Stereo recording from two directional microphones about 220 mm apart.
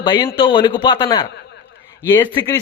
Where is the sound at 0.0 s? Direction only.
20° left (ahead or behind).